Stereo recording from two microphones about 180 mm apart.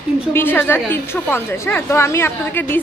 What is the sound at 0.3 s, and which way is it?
A woman's voice, 10° left (ahead or behind).